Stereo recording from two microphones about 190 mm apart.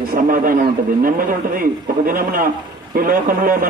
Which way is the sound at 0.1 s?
50° right (ahead or behind).